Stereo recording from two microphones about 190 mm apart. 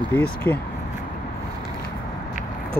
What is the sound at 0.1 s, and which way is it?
Speech, 10° left (ahead or behind).